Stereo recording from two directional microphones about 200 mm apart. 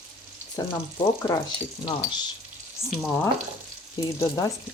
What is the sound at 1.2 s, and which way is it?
Frying, 20° left (ahead or behind).